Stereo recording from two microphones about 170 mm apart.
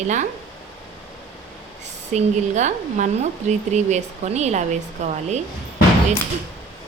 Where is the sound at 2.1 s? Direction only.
45° right (ahead or behind).